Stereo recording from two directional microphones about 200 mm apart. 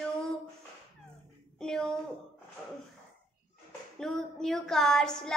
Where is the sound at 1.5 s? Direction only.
5° left (ahead or behind).